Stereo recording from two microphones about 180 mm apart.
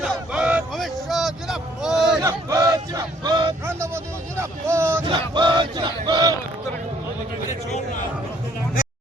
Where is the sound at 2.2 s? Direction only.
20° right (ahead or behind).